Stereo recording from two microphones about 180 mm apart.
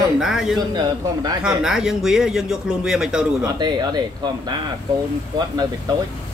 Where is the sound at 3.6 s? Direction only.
25° right (ahead or behind).